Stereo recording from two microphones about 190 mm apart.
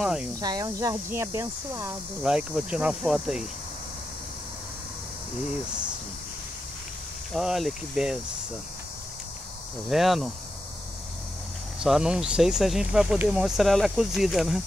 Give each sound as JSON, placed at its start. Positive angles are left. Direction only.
{"t": 0.0, "sound": "speech", "side_deg": -5}
{"t": 0.4, "sound": "speech", "side_deg": -20}
{"t": 7.3, "sound": "speech", "side_deg": 0}
{"t": 9.8, "sound": "speech", "side_deg": 0}
{"t": 11.8, "sound": "speech", "side_deg": -5}